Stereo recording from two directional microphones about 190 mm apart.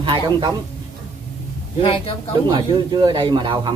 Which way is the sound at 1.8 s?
30° left (ahead or behind).